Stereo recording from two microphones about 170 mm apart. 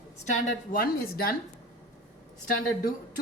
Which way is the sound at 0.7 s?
60° left (ahead or behind).